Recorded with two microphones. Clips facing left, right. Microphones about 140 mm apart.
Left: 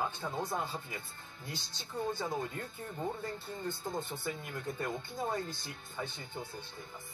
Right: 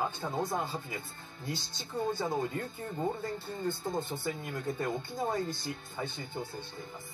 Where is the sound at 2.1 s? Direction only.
25° right (ahead or behind).